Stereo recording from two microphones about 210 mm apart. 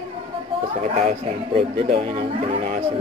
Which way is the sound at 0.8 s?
30° right (ahead or behind).